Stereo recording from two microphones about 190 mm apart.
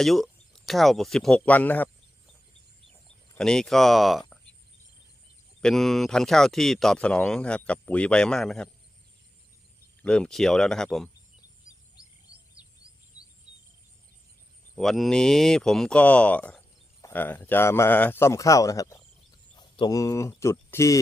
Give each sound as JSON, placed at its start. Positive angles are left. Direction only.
{"t": 0.0, "sound": "speech", "side_deg": 0}
{"t": 3.3, "sound": "speech", "side_deg": 5}
{"t": 5.5, "sound": "speech", "side_deg": 0}
{"t": 10.0, "sound": "speech", "side_deg": 5}
{"t": 12.8, "sound": "a sound", "side_deg": 15}
{"t": 14.8, "sound": "speech", "side_deg": 0}